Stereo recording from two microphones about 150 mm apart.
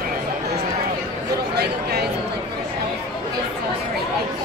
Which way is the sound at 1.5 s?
90° right.